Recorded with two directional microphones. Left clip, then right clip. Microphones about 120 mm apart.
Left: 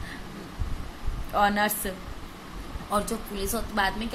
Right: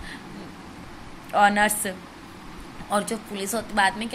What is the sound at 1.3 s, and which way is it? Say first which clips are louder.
A woman's voice: right 5 dB; 15° right (ahead or behind).